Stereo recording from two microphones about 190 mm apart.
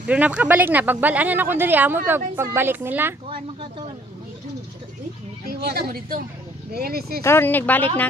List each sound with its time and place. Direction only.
0.0 s speech: 5° right (ahead or behind)
5.5 s a woman's voice: 55° right (ahead or behind)
7.2 s speech: 10° left (ahead or behind)